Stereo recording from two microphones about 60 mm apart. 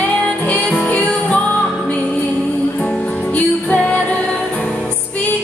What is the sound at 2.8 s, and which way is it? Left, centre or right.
Music, centre.